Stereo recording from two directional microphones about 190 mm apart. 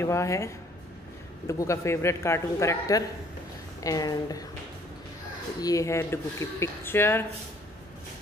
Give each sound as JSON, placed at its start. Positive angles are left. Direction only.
{"t": 0.0, "sound": "a man's voice", "side_deg": 15}
{"t": 1.5, "sound": "a man's voice", "side_deg": 15}
{"t": 5.6, "sound": "a man's voice", "side_deg": 15}